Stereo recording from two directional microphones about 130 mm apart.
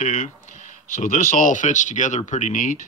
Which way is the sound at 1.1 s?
75° left (ahead or behind).